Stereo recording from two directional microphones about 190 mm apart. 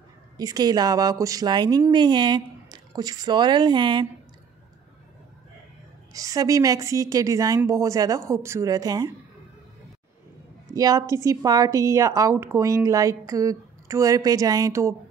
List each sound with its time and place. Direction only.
0.4 s a woman's voice: 20° right (ahead or behind)
6.1 s a woman's voice: 20° right (ahead or behind)
10.7 s a woman's voice: 20° right (ahead or behind)